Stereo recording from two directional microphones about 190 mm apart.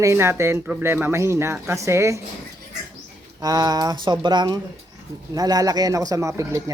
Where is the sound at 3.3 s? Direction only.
20° right (ahead or behind).